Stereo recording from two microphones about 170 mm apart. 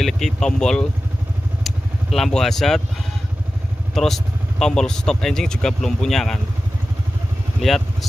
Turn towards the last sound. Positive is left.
turn(degrees=0)  # may be behind; listen again after turning